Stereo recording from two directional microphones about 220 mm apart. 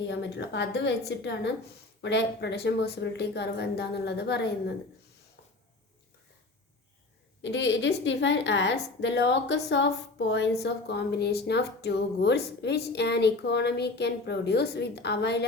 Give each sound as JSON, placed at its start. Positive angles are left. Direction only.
{"t": 0.1, "sound": "a woman's voice", "side_deg": 50}
{"t": 7.4, "sound": "a woman's voice", "side_deg": 55}